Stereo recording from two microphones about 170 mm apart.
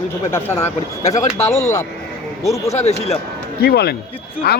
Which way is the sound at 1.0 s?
40° left (ahead or behind).